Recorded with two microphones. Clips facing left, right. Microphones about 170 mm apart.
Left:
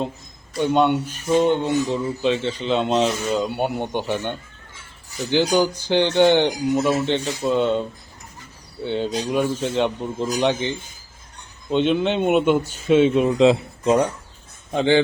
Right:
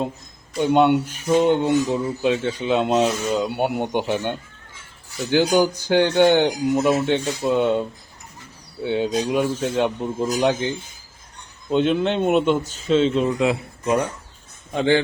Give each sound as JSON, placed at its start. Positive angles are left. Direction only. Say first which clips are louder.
{"t": 0.5, "sound": "speech", "louder": "right 2 dB", "side_deg": -10}
{"t": 5.5, "sound": "a man's voice", "louder": "right 1 dB", "side_deg": -15}